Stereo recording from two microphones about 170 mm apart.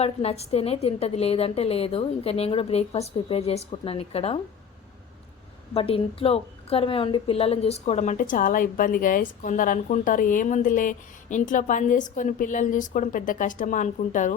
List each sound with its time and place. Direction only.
0.0 s a woman's voice: 35° left (ahead or behind)
5.7 s a woman's voice: 35° left (ahead or behind)